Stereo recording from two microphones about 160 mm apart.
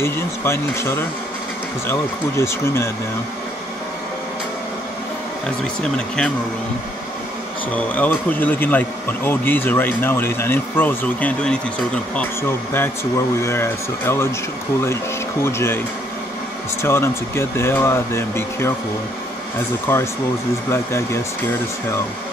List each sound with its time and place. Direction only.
0.0 s speech: 15° left (ahead or behind)
5.8 s speech: 5° left (ahead or behind)
7.7 s speech: 10° left (ahead or behind)
15.4 s speech: 15° left (ahead or behind)
16.8 s speech: 15° left (ahead or behind)
19.9 s speech: 15° left (ahead or behind)